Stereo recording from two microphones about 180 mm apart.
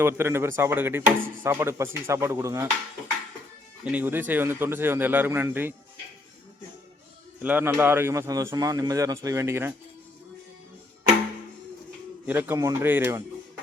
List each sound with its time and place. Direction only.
0.0 s speech: 15° right (ahead or behind)
3.9 s speech: 10° right (ahead or behind)
7.4 s speech: 10° right (ahead or behind)
12.2 s speech: 10° right (ahead or behind)